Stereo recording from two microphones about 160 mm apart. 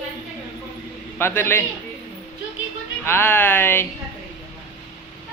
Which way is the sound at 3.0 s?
15° left (ahead or behind).